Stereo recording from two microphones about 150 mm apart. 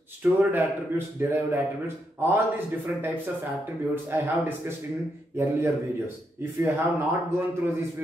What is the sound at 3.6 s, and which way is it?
A man's voice, 15° right (ahead or behind).